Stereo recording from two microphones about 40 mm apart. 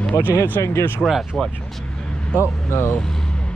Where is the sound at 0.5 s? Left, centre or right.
Left.